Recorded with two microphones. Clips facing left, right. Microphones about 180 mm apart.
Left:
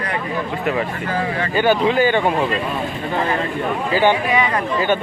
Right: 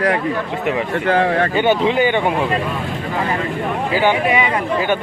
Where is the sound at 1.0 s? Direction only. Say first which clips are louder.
Right 6 dB; 70° right (ahead or behind).